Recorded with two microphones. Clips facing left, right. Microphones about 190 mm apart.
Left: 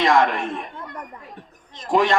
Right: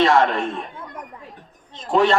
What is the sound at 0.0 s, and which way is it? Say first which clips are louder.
Speech: right 2 dB; 15° left (ahead or behind).